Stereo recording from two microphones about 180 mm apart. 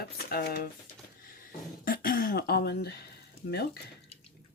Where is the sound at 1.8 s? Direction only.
55° left (ahead or behind).